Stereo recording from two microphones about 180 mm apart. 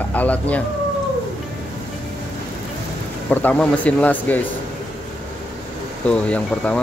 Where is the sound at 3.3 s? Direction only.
10° left (ahead or behind).